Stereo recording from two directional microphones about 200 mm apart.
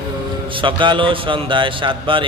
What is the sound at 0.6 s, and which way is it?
Speech, 25° right (ahead or behind).